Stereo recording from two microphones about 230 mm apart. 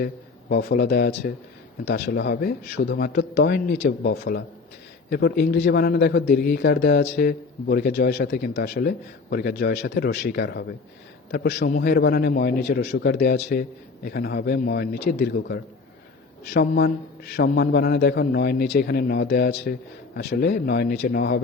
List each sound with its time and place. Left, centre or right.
0.0 s a man's voice: left